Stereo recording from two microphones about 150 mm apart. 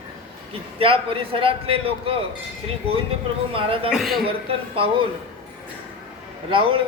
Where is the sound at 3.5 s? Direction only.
40° right (ahead or behind).